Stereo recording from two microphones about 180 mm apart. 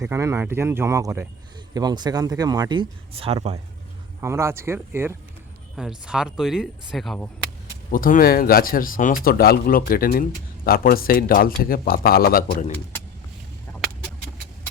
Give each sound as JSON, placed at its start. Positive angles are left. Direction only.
{"t": 0.0, "sound": "speech", "side_deg": -15}
{"t": 4.2, "sound": "speech", "side_deg": -15}
{"t": 7.9, "sound": "speech", "side_deg": 50}